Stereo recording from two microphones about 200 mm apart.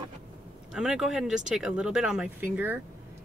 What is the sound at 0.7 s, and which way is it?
Speech, centre (ahead or behind).